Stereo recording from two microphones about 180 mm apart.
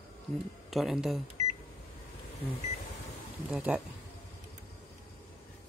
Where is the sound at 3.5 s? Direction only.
5° right (ahead or behind).